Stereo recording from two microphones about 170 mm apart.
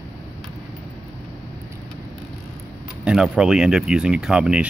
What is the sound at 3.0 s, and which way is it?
Speech, 5° right (ahead or behind).